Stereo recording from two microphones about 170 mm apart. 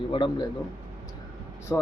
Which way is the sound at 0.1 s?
25° left (ahead or behind).